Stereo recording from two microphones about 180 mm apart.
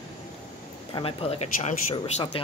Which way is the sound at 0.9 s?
30° left (ahead or behind).